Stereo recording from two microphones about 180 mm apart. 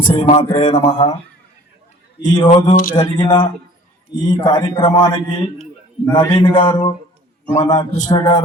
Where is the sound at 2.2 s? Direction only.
20° left (ahead or behind).